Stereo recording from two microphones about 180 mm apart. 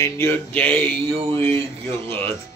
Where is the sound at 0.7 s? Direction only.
30° right (ahead or behind).